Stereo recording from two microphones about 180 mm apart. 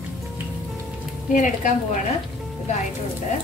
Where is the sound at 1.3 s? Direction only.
45° left (ahead or behind).